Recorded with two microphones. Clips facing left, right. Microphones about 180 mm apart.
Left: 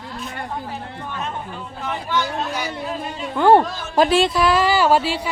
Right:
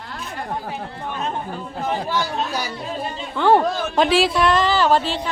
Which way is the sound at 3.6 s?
60° right (ahead or behind).